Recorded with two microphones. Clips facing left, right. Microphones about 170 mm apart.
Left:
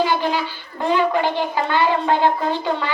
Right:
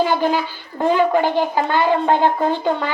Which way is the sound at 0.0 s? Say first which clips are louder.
Right 2 dB; 45° right (ahead or behind).